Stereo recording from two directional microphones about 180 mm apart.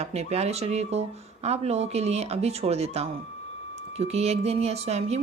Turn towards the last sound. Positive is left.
turn(degrees=-35)  # may be behind; listen again after turning